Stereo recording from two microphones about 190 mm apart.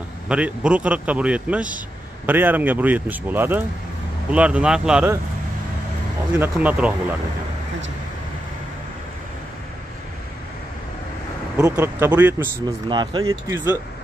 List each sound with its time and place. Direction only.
0.3 s a man's voice: 5° right (ahead or behind)
6.3 s a man's voice: 10° right (ahead or behind)
11.5 s a man's voice: 15° right (ahead or behind)
12.6 s a man's voice: 25° right (ahead or behind)